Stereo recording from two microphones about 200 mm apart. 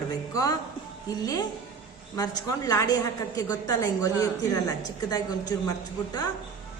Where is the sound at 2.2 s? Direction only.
15° left (ahead or behind).